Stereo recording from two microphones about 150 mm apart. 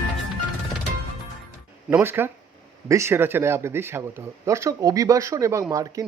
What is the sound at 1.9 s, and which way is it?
Speech, 15° right (ahead or behind).